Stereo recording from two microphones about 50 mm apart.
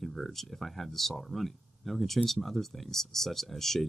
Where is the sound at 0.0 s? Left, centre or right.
Centre.